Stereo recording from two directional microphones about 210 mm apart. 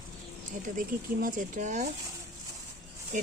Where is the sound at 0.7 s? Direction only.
40° right (ahead or behind).